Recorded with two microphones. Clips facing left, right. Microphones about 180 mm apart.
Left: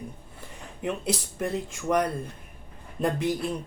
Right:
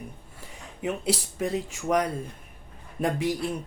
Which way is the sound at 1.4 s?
75° right (ahead or behind).